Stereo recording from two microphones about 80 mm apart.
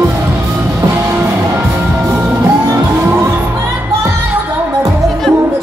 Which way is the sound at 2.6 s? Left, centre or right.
Right.